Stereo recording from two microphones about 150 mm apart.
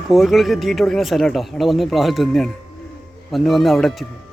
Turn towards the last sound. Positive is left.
turn(degrees=0)  # may be behind; listen again after turning